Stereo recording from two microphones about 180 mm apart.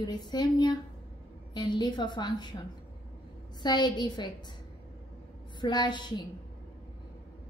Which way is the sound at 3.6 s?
25° left (ahead or behind).